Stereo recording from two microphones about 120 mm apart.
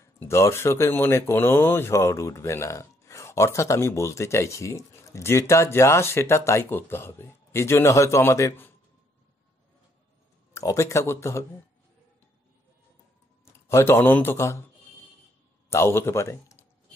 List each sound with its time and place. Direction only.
0.0 s speech: 25° left (ahead or behind)
10.5 s speech: 25° left (ahead or behind)
13.5 s speech: 20° left (ahead or behind)
15.7 s speech: 20° left (ahead or behind)